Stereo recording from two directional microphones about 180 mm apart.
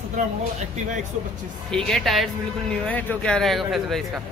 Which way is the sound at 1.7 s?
Centre (ahead or behind).